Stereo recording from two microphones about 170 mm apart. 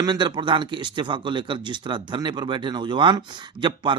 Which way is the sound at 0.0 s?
25° right (ahead or behind).